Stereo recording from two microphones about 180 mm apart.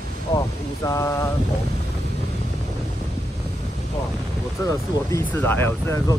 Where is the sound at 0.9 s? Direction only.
15° left (ahead or behind).